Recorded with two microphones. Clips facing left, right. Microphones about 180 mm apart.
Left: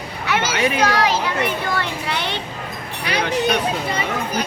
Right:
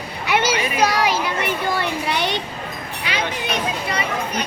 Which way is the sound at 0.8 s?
10° right (ahead or behind).